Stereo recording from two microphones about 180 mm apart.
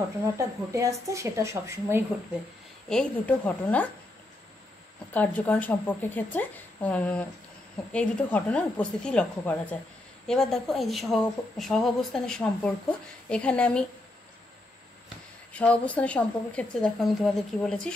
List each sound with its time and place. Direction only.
0.4 s a woman's voice: 15° right (ahead or behind)
2.9 s speech: 5° left (ahead or behind)
5.1 s a woman's voice: 10° left (ahead or behind)
15.5 s speech: 5° left (ahead or behind)